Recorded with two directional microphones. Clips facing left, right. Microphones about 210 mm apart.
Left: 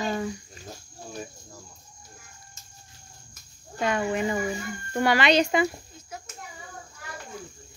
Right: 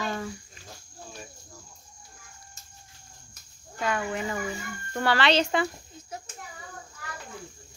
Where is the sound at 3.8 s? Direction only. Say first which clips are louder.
Left 4 dB; 25° left (ahead or behind).